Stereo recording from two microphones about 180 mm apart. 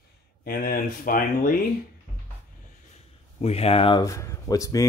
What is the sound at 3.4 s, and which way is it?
Speech, 35° left (ahead or behind).